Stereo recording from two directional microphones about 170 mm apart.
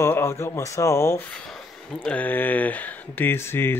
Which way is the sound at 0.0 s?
15° left (ahead or behind).